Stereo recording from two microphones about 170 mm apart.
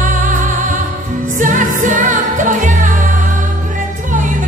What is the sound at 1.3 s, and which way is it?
Music, 50° right (ahead or behind).